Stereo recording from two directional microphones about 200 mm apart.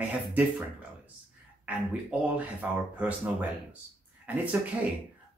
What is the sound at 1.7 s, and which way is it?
Speech, 5° right (ahead or behind).